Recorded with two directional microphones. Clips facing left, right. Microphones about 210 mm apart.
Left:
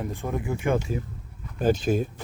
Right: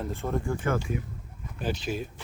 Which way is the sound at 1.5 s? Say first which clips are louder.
Left 8 dB; 45° left (ahead or behind).